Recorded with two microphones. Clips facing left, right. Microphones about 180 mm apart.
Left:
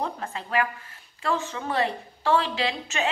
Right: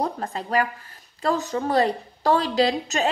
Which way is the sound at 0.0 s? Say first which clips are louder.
Right 4 dB; 40° right (ahead or behind).